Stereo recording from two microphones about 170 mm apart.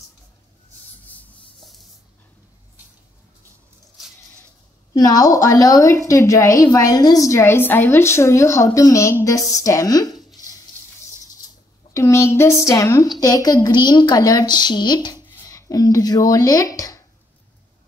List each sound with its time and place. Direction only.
4.9 s a woman's voice: 20° left (ahead or behind)
11.9 s a woman's voice: 15° left (ahead or behind)